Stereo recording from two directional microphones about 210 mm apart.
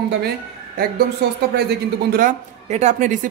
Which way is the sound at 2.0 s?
40° right (ahead or behind).